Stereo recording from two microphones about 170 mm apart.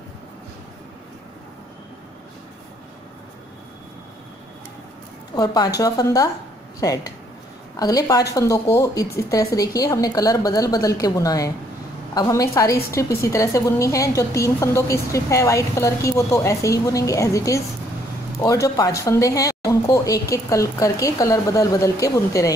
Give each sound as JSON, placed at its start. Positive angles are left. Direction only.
{"t": 5.3, "sound": "speech", "side_deg": 25}
{"t": 7.7, "sound": "a woman's voice", "side_deg": 20}